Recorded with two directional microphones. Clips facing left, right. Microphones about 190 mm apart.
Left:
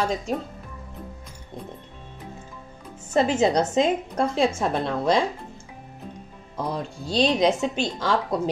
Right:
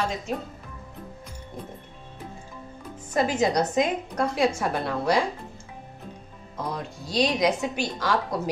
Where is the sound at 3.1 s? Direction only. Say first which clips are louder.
Left 3 dB; 25° left (ahead or behind).